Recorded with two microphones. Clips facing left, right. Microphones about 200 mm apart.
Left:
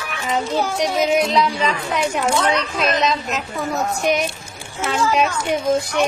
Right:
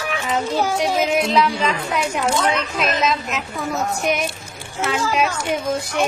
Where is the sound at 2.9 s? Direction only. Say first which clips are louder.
Left 1 dB; centre (ahead or behind).